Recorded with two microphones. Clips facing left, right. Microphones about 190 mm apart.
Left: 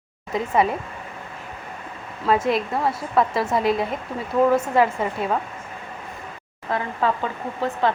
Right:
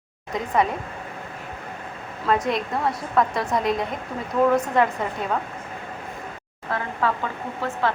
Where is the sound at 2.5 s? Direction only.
5° left (ahead or behind).